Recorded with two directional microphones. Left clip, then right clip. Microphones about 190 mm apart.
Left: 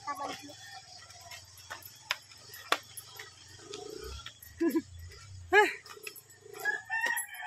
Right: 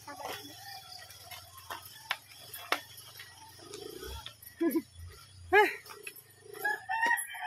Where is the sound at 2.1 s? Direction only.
35° left (ahead or behind).